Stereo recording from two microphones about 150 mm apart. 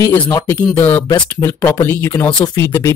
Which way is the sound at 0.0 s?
15° left (ahead or behind).